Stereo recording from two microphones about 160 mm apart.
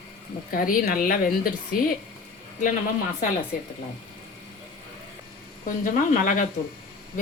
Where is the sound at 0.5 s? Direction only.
60° left (ahead or behind).